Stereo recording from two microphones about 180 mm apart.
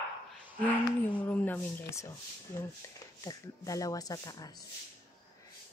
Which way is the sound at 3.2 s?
20° left (ahead or behind).